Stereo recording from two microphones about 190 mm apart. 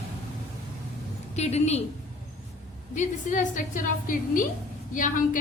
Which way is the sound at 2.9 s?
40° left (ahead or behind).